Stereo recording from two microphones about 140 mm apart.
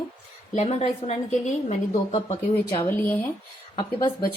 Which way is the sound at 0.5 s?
50° left (ahead or behind).